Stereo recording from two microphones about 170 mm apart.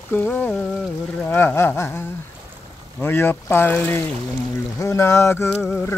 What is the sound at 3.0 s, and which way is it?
Speech, 15° left (ahead or behind).